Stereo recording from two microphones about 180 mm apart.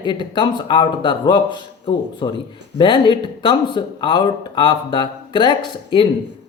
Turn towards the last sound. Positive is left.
turn(degrees=25)  # may be behind; listen again after turning